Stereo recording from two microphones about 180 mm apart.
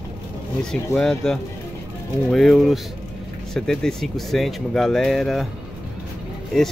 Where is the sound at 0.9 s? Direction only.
5° left (ahead or behind).